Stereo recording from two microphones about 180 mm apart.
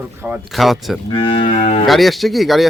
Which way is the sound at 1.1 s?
30° left (ahead or behind).